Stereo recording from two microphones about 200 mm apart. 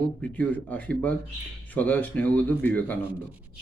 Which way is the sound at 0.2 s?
10° left (ahead or behind).